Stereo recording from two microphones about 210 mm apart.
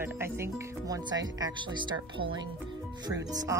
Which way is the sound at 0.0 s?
10° right (ahead or behind).